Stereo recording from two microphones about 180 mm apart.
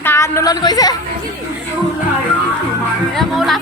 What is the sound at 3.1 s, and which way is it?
Music, centre (ahead or behind).